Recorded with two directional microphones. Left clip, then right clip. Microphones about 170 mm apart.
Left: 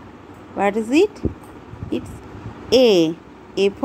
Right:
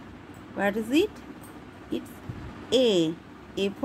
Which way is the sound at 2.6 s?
15° left (ahead or behind).